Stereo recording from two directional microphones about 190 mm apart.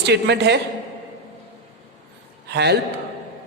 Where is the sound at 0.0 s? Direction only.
60° right (ahead or behind).